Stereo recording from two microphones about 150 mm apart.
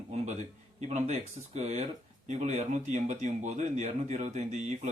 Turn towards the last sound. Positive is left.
turn(degrees=-50)  # may be behind; listen again after turning